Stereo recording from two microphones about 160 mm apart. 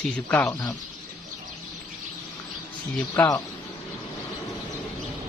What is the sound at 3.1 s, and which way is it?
Speech, 15° left (ahead or behind).